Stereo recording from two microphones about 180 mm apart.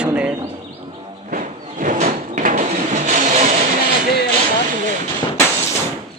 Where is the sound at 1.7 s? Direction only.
45° right (ahead or behind).